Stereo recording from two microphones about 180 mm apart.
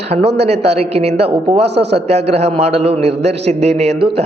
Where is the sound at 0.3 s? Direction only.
70° right (ahead or behind).